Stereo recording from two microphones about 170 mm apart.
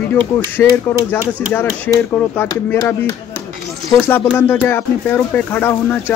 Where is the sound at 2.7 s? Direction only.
20° left (ahead or behind).